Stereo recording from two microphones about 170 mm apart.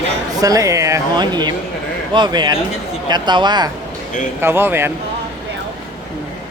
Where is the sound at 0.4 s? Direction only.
20° right (ahead or behind).